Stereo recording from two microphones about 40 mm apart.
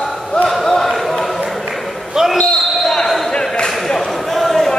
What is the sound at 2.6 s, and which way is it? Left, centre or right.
Basketball bounce, centre.